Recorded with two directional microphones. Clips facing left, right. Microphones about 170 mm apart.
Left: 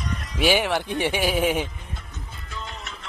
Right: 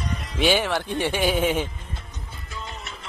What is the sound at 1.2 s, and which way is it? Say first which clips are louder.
Speech: right 1 dB; 5° left (ahead or behind).